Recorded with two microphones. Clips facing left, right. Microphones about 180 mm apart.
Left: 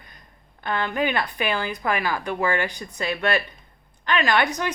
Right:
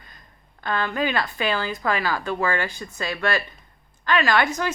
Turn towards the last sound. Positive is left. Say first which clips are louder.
# right 1 dB
turn(degrees=20)  # may be behind; listen again after turning